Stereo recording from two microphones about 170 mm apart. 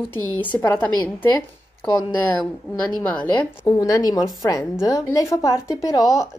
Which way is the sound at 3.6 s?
20° left (ahead or behind).